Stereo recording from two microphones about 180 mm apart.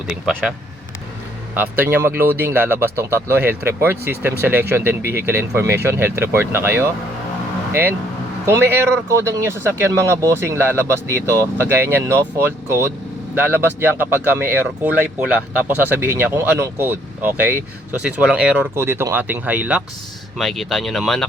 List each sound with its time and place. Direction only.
0.1 s speech: centre (ahead or behind)
1.5 s speech: 10° right (ahead or behind)